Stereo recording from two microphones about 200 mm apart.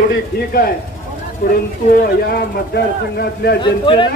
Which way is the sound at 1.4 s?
45° left (ahead or behind).